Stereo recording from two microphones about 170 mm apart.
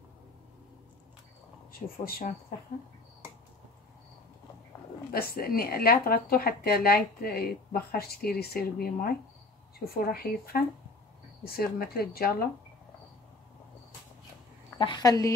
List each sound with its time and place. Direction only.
1.7 s speech: 60° left (ahead or behind)
5.1 s speech: 60° left (ahead or behind)
14.8 s a woman's voice: 25° left (ahead or behind)